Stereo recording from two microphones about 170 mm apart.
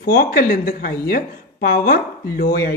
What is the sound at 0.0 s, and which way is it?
A man's voice, 60° left (ahead or behind).